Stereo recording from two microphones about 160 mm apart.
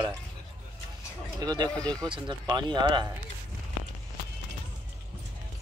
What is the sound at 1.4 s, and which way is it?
Speech, 25° right (ahead or behind).